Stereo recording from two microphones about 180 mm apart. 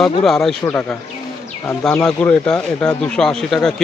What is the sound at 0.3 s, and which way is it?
Speech, centre (ahead or behind).